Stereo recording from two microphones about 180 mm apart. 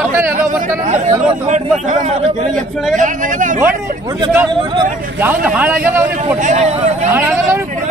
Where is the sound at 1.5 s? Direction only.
45° right (ahead or behind).